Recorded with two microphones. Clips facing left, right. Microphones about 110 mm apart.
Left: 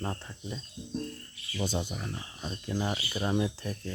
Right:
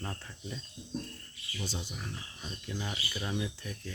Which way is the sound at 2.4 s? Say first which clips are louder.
Left 7 dB; 40° left (ahead or behind).